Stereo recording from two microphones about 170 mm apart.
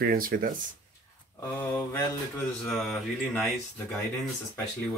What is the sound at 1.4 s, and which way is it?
Speech, 10° left (ahead or behind).